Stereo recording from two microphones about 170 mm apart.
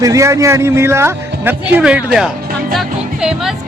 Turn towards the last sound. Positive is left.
turn(degrees=-5)  # may be behind; listen again after turning